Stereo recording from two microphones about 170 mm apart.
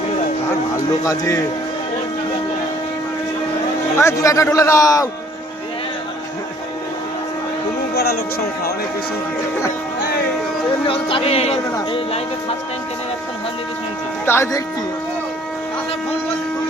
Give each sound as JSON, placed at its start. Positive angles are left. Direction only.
{"t": 1.0, "sound": "a man's voice", "side_deg": 20}
{"t": 3.9, "sound": "a man's voice", "side_deg": 15}
{"t": 7.9, "sound": "music", "side_deg": 70}
{"t": 10.8, "sound": "music", "side_deg": 35}
{"t": 14.3, "sound": "speech", "side_deg": 15}